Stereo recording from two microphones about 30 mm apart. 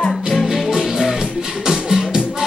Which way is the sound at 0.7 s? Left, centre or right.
Right.